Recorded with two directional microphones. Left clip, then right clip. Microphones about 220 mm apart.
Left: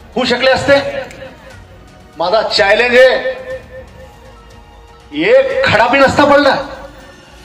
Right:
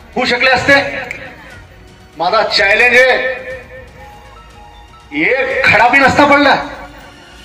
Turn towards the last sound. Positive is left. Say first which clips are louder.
# even
turn(degrees=20)  # may be behind; listen again after turning